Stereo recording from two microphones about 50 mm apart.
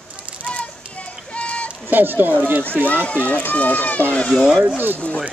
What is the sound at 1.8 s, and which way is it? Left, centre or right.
Speech, right.